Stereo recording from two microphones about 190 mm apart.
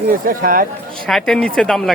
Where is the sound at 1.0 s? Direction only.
Centre (ahead or behind).